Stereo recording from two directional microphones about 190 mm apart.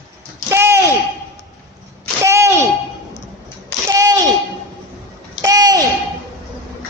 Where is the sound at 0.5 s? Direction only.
15° right (ahead or behind).